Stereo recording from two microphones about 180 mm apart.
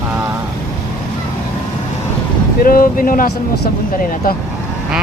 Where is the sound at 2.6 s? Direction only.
55° left (ahead or behind).